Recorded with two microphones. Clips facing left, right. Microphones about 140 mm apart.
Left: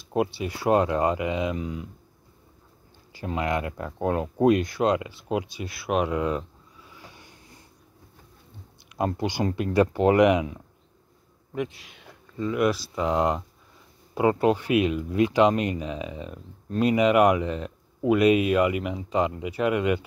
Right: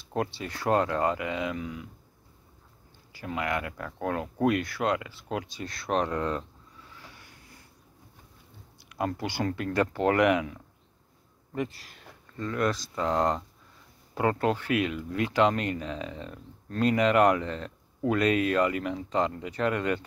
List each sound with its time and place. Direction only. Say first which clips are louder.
0.0 s speech: left 5 dB; 15° left (ahead or behind)
3.1 s speech: left 4 dB; 25° left (ahead or behind)
8.8 s speech: left 4 dB; 20° left (ahead or behind)
11.5 s speech: left 2 dB; centre (ahead or behind)
12.4 s speech: left 5 dB; 10° left (ahead or behind)